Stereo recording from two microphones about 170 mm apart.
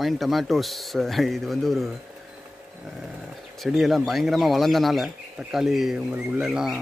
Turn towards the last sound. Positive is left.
turn(degrees=-5)  # may be behind; listen again after turning